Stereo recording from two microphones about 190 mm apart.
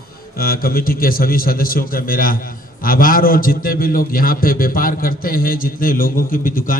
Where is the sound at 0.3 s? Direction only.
50° left (ahead or behind).